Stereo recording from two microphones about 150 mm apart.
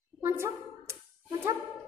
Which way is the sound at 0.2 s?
20° right (ahead or behind).